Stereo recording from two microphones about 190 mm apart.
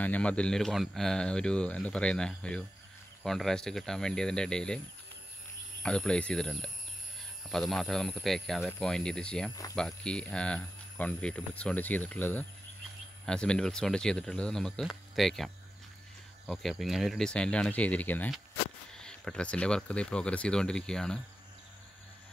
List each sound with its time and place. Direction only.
0.0 s speech: 5° left (ahead or behind)